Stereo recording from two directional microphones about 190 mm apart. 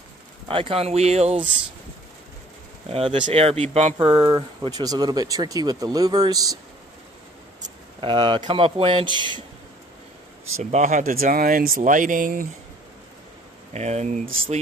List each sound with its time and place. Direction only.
0.5 s speech: 30° right (ahead or behind)
2.9 s speech: 30° right (ahead or behind)
8.0 s speech: 25° right (ahead or behind)
10.6 s speech: 40° right (ahead or behind)
13.7 s speech: 35° right (ahead or behind)